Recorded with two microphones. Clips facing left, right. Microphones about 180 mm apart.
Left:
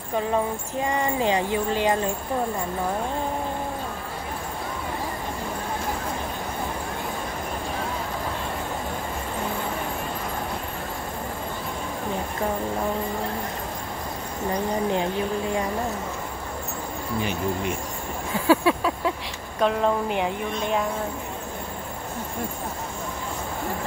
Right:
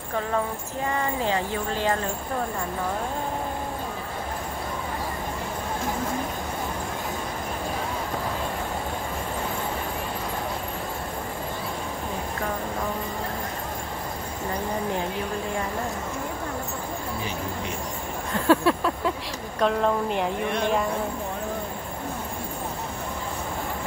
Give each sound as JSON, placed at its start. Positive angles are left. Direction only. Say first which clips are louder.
{"t": 0.8, "sound": "speech", "louder": "left 2 dB", "side_deg": 15}
{"t": 18.3, "sound": "a sound", "louder": "even", "side_deg": 0}
{"t": 19.6, "sound": "a woman's voice", "louder": "left 1 dB", "side_deg": 0}